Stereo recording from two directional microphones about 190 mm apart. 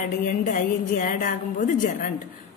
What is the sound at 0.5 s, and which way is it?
A woman's voice, 45° left (ahead or behind).